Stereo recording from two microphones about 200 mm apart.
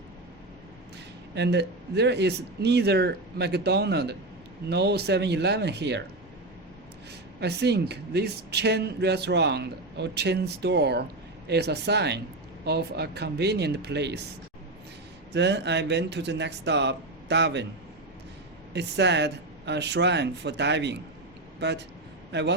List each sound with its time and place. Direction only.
1.4 s speech: 55° right (ahead or behind)
7.3 s speech: 55° right (ahead or behind)
15.3 s speech: 60° right (ahead or behind)
18.7 s a man's voice: 60° right (ahead or behind)